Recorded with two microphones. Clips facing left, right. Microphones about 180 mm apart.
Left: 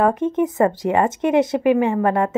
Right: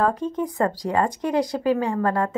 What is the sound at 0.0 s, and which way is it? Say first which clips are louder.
Speech: left 5 dB; 20° left (ahead or behind).